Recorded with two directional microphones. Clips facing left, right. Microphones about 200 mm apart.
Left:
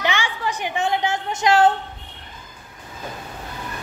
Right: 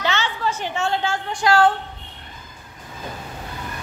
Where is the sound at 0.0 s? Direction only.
15° left (ahead or behind).